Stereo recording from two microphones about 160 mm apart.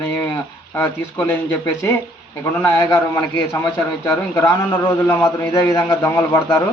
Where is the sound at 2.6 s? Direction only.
20° left (ahead or behind).